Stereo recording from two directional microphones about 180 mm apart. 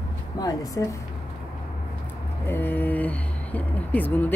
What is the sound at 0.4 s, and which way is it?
Speech, 20° left (ahead or behind).